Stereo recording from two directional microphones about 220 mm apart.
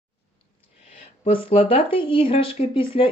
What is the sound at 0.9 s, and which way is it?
Speech, 25° left (ahead or behind).